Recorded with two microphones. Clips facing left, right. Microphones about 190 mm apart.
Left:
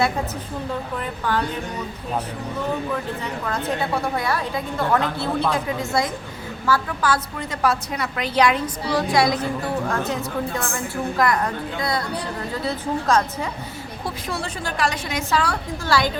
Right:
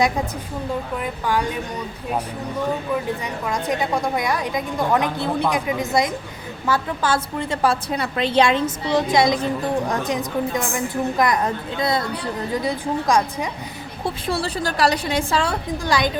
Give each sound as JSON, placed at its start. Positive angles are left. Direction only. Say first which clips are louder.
{"t": 0.9, "sound": "a woman's voice", "louder": "right 1 dB", "side_deg": -10}
{"t": 3.4, "sound": "a woman's voice", "louder": "right 2 dB", "side_deg": -15}
{"t": 14.0, "sound": "a woman's voice", "louder": "right 5 dB", "side_deg": -30}